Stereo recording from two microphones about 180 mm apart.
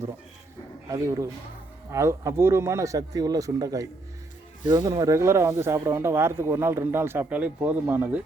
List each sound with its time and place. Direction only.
0.9 s speech: 20° right (ahead or behind)